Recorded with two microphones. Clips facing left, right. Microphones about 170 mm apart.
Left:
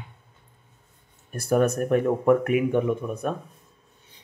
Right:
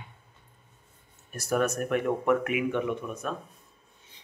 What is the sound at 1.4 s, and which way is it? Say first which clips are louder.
Speech: left 5 dB; 30° left (ahead or behind).